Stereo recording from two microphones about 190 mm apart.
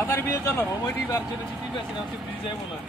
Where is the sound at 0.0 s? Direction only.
10° left (ahead or behind).